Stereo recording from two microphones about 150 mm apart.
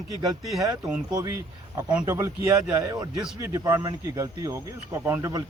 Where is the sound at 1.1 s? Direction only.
25° right (ahead or behind).